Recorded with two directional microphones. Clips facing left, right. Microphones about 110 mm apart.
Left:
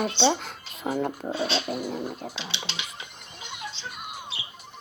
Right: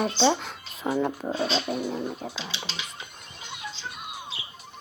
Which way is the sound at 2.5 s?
70° left (ahead or behind).